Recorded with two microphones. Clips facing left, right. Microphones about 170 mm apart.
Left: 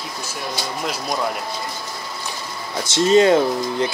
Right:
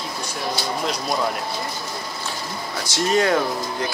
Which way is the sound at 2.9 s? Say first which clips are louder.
Left 6 dB; 25° left (ahead or behind).